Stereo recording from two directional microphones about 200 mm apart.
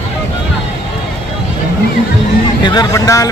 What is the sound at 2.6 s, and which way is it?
Speech, 20° left (ahead or behind).